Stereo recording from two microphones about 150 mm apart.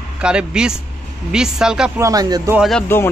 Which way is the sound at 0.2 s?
5° right (ahead or behind).